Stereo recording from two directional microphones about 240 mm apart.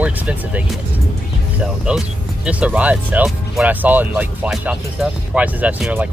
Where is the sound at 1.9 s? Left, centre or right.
Centre.